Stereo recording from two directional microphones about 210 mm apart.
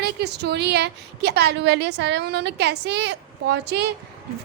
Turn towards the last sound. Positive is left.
turn(degrees=-55)  # may be behind; listen again after turning